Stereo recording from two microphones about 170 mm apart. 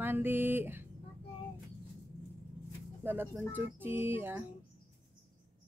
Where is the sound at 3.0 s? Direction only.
10° right (ahead or behind).